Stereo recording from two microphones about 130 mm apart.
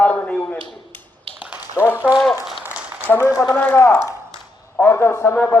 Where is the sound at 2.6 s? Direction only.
15° right (ahead or behind).